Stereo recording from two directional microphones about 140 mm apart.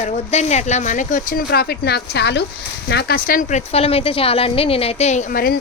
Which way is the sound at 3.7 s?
45° left (ahead or behind).